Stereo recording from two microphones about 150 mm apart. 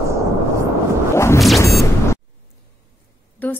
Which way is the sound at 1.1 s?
20° left (ahead or behind).